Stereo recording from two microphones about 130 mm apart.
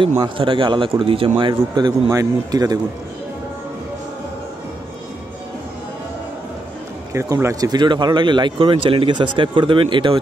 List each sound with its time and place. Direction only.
0.2 s speech: 40° right (ahead or behind)
2.0 s speech: 25° right (ahead or behind)
7.1 s speech: 20° right (ahead or behind)
7.7 s speech: 35° right (ahead or behind)